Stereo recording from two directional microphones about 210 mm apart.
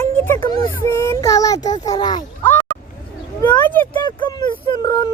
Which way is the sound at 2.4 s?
10° left (ahead or behind).